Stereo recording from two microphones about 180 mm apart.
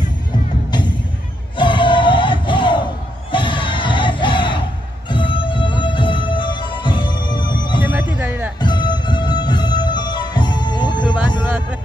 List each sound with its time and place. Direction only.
0.7 s music: 25° left (ahead or behind)
1.6 s crowd: 25° left (ahead or behind)
5.1 s music: 25° left (ahead or behind)
7.8 s music: 10° right (ahead or behind)
8.5 s music: 25° left (ahead or behind)